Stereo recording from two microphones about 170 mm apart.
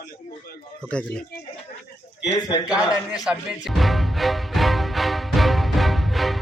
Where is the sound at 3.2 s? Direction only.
Centre (ahead or behind).